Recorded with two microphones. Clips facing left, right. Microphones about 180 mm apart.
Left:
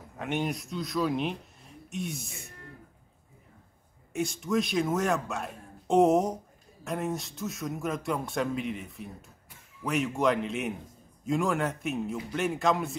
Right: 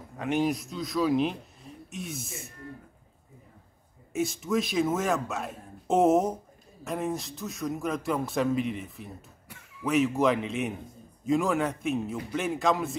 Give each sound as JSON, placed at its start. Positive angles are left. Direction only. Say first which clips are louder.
{"t": 0.2, "sound": "a man's voice", "louder": "right 4 dB", "side_deg": 0}
{"t": 4.1, "sound": "a man's voice", "louder": "right 1 dB", "side_deg": 0}